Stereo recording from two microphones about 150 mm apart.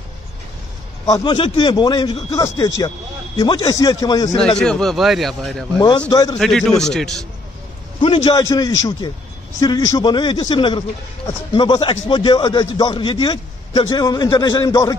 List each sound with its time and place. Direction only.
1.0 s a man's voice: 25° left (ahead or behind)
4.6 s a man's voice: 5° left (ahead or behind)
5.8 s a man's voice: 30° left (ahead or behind)
6.8 s a man's voice: 5° left (ahead or behind)
8.0 s a man's voice: 30° left (ahead or behind)